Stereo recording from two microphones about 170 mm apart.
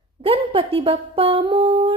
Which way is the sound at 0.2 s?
30° right (ahead or behind).